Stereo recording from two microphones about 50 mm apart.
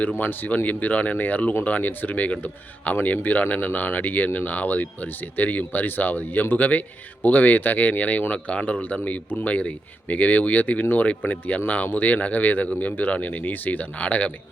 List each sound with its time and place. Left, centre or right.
0.2 s speech: left